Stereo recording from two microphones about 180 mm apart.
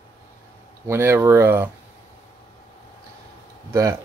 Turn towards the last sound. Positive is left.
turn(degrees=-15)  # may be behind; listen again after turning